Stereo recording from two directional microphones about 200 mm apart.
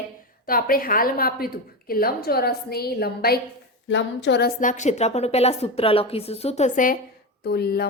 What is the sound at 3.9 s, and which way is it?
Speech, 65° left (ahead or behind).